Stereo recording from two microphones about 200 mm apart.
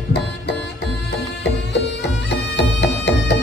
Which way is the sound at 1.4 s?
60° left (ahead or behind).